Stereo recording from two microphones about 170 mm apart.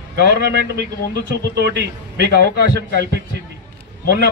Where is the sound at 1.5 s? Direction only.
85° right.